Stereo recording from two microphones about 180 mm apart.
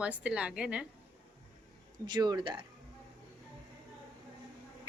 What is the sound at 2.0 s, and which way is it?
Speech, 25° right (ahead or behind).